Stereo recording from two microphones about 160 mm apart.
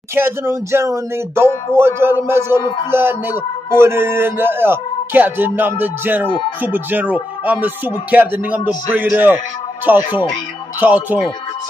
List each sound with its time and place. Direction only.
0.1 s speech: 15° right (ahead or behind)